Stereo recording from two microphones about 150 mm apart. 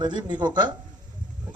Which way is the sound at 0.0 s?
30° right (ahead or behind).